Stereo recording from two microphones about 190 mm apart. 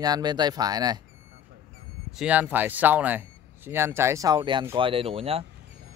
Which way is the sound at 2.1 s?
5° right (ahead or behind).